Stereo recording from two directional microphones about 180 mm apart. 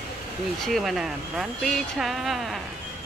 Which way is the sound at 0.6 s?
Centre (ahead or behind).